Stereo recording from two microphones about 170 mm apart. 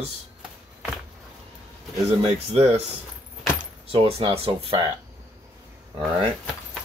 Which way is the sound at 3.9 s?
35° right (ahead or behind).